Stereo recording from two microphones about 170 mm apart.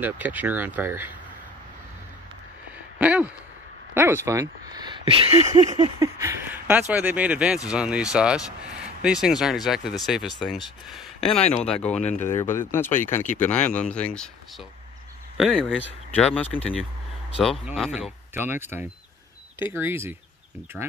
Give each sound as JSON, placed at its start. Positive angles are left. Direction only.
{"t": 0.0, "sound": "speech", "side_deg": -10}
{"t": 3.0, "sound": "a sound", "side_deg": -10}
{"t": 3.9, "sound": "speech", "side_deg": -15}
{"t": 4.7, "sound": "a sound", "side_deg": -25}
{"t": 5.9, "sound": "speech", "side_deg": -15}
{"t": 11.3, "sound": "speech", "side_deg": 40}
{"t": 11.6, "sound": "speech", "side_deg": 5}
{"t": 17.7, "sound": "speech", "side_deg": 0}
{"t": 18.3, "sound": "speech", "side_deg": -10}